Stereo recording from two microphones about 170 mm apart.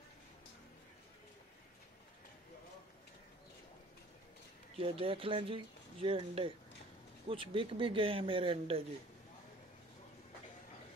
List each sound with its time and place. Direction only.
4.7 s speech: 35° right (ahead or behind)